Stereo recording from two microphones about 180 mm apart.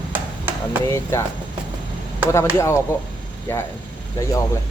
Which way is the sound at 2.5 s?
15° left (ahead or behind).